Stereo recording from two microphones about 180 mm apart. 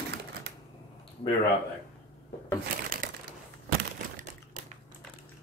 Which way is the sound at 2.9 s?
50° right (ahead or behind).